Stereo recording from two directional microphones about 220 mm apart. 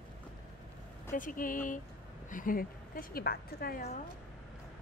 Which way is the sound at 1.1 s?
40° left (ahead or behind).